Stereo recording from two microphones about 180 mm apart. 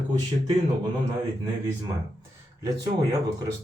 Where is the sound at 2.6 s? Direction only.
20° right (ahead or behind).